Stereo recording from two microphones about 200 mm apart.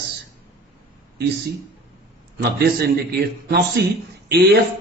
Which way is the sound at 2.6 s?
50° right (ahead or behind).